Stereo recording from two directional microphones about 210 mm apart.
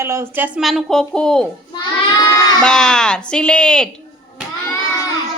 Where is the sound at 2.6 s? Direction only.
5° left (ahead or behind).